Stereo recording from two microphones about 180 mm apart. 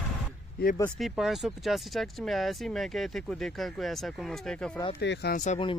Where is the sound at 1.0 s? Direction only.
5° right (ahead or behind).